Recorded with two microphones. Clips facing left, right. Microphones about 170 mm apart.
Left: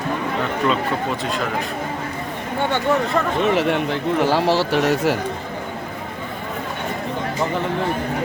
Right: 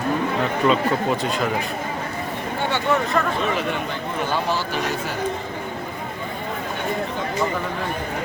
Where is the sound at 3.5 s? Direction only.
75° left (ahead or behind).